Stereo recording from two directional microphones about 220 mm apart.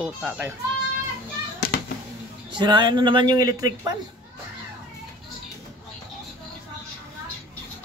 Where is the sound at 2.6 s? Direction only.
20° right (ahead or behind).